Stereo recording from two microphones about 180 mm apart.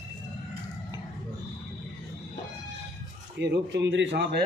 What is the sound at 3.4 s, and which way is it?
A man's voice, 70° right (ahead or behind).